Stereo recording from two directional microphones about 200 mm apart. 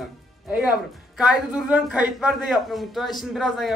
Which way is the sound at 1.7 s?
5° right (ahead or behind).